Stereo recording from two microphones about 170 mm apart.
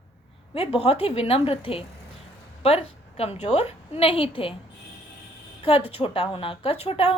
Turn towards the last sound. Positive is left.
turn(degrees=35)  # may be behind; listen again after turning